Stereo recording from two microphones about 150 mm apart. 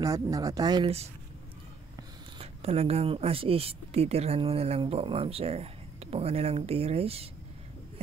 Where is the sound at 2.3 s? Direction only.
40° right (ahead or behind).